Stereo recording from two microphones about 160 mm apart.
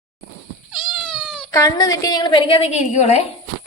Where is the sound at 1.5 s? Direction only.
20° left (ahead or behind); by 3.2 s 45° left (ahead or behind).